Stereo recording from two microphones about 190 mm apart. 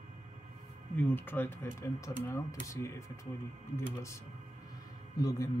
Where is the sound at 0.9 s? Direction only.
10° left (ahead or behind).